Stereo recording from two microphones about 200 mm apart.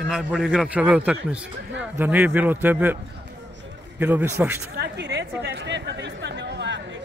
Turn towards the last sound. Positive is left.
turn(degrees=-60)  # may be behind; listen again after turning